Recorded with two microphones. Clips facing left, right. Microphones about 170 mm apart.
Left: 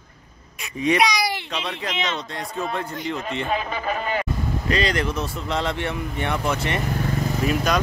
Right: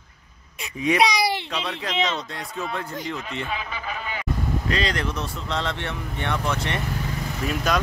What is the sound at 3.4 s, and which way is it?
Speech, 40° left (ahead or behind).